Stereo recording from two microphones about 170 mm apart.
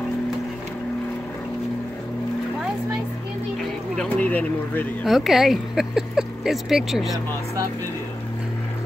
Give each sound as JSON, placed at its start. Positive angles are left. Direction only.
{"t": 3.9, "sound": "speech", "side_deg": 5}